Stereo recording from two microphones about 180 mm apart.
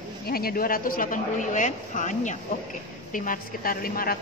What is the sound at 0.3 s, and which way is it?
A woman's voice, 55° left (ahead or behind).